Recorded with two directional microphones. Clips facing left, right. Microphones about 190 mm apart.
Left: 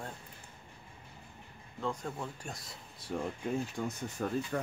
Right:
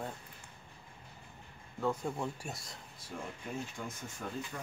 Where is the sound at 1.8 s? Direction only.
10° right (ahead or behind).